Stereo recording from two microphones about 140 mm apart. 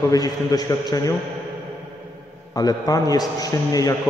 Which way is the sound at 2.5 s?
25° left (ahead or behind).